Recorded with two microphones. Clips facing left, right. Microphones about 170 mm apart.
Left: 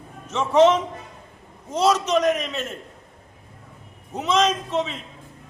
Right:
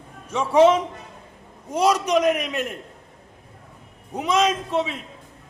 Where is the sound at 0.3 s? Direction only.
10° right (ahead or behind).